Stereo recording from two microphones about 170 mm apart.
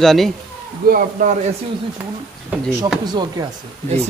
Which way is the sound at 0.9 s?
55° right (ahead or behind).